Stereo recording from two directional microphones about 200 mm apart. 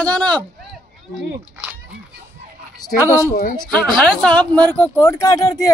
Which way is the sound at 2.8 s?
15° left (ahead or behind).